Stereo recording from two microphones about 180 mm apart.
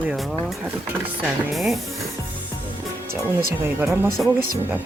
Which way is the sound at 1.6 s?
Centre (ahead or behind).